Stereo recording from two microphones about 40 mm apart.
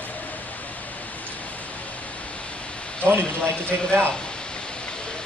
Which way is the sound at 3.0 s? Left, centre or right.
Right.